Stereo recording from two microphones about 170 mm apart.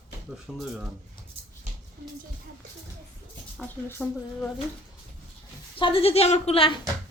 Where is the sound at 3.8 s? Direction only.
10° left (ahead or behind).